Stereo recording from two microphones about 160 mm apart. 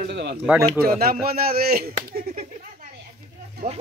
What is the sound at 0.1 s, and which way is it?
Speech, 90° right.